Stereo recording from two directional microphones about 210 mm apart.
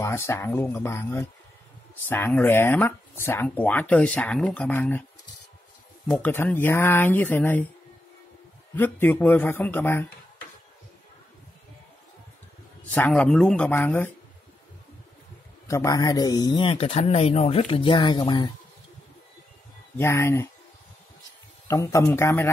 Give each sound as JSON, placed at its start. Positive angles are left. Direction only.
{"t": 0.0, "sound": "speech", "side_deg": 10}
{"t": 6.0, "sound": "speech", "side_deg": 5}
{"t": 8.7, "sound": "speech", "side_deg": 10}
{"t": 12.9, "sound": "speech", "side_deg": 5}
{"t": 15.6, "sound": "speech", "side_deg": 15}
{"t": 20.0, "sound": "speech", "side_deg": 10}
{"t": 21.6, "sound": "speech", "side_deg": 10}